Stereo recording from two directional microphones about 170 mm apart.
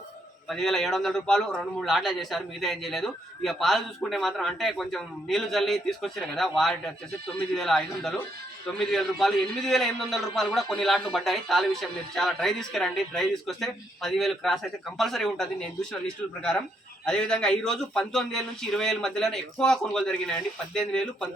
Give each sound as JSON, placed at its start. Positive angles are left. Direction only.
{"t": 0.4, "sound": "a man's voice", "side_deg": 0}